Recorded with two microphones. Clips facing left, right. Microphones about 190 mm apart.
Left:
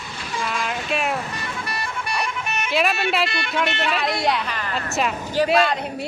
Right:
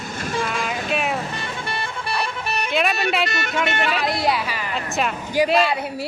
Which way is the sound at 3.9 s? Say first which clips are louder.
Right 1 dB; centre (ahead or behind).